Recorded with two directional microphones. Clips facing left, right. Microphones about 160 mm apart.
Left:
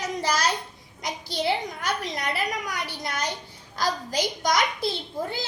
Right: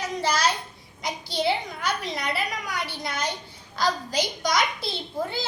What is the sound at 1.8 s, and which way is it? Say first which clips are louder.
A woman's voice: even; 45° left (ahead or behind).